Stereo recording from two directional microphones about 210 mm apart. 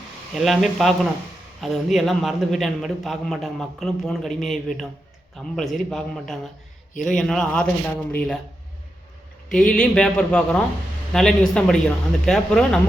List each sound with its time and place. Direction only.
0.3 s a man's voice: centre (ahead or behind)
9.5 s a man's voice: 5° left (ahead or behind)